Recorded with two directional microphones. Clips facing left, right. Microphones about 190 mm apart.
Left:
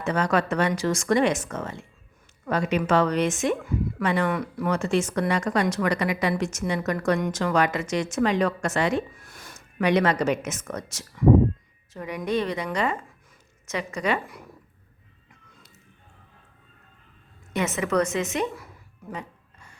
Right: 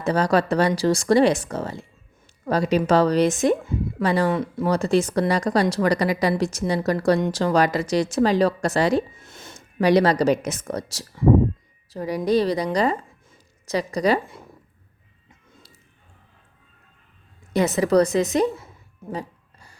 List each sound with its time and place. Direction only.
0.0 s a woman's voice: 35° right (ahead or behind)
4.3 s a woman's voice: 25° right (ahead or behind)
9.1 s a woman's voice: 25° right (ahead or behind)
17.5 s a sound: 35° right (ahead or behind)